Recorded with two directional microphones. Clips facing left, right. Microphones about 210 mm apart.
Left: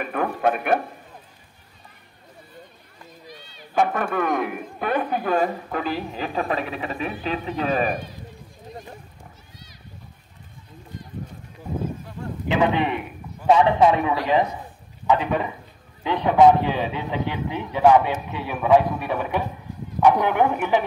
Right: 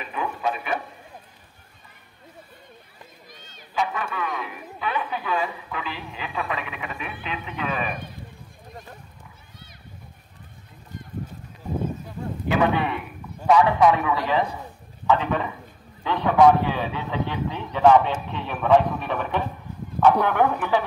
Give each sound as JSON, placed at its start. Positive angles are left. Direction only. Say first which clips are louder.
{"t": 0.0, "sound": "a man's voice", "louder": "left 5 dB", "side_deg": 55}
{"t": 3.3, "sound": "a sound", "louder": "left 5 dB", "side_deg": -45}
{"t": 3.7, "sound": "speech", "louder": "left 6 dB", "side_deg": 50}
{"t": 12.4, "sound": "a man's voice", "louder": "left 1 dB", "side_deg": 20}